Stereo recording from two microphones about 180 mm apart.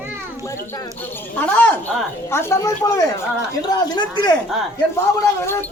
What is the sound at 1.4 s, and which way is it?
A man's voice, 10° left (ahead or behind).